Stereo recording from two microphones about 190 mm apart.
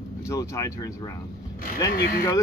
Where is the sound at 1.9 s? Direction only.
55° left (ahead or behind).